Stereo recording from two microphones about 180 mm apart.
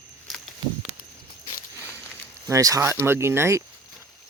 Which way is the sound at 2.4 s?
20° right (ahead or behind).